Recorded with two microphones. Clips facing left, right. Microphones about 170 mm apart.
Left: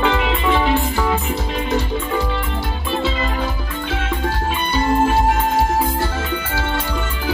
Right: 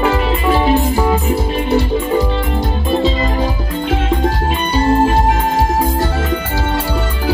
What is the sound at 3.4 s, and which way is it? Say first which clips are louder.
Music: right 6 dB; 40° right (ahead or behind).